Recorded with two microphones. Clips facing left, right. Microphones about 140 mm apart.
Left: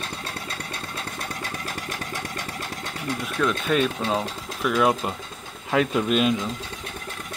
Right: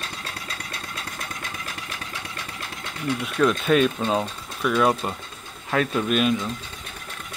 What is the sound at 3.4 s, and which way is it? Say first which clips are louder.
Speech: right 4 dB; 10° right (ahead or behind).